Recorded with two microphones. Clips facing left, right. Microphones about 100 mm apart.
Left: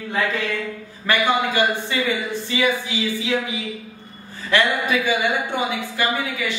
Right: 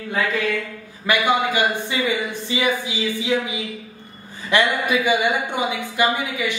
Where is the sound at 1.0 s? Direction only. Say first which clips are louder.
Right 1 dB; 15° right (ahead or behind).